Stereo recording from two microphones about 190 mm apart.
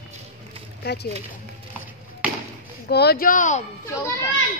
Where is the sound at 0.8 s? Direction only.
60° left (ahead or behind).